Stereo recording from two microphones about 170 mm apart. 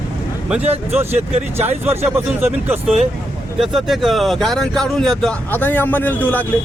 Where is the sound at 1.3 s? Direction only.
40° right (ahead or behind).